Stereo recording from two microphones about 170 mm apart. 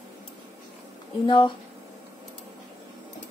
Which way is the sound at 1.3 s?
30° left (ahead or behind).